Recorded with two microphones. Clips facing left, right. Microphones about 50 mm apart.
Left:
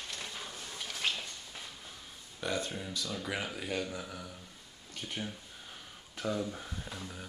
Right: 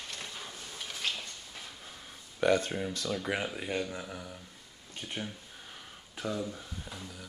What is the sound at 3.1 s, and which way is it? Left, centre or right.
Speech, centre.